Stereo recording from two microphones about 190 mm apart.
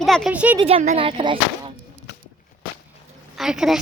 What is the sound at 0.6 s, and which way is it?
Speech, 30° right (ahead or behind).